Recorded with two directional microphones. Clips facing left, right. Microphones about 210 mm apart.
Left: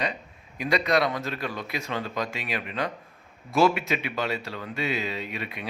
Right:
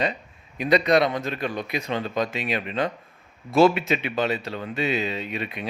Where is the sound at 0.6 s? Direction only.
20° right (ahead or behind).